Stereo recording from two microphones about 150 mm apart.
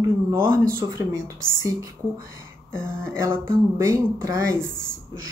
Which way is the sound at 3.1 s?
20° right (ahead or behind).